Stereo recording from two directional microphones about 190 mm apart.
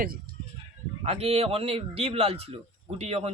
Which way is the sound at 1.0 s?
30° right (ahead or behind).